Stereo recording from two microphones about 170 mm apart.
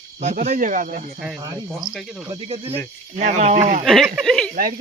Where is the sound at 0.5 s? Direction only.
50° right (ahead or behind).